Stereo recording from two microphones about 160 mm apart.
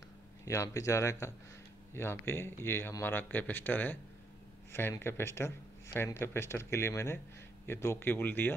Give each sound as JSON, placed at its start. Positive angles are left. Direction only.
{"t": 0.5, "sound": "speech", "side_deg": 20}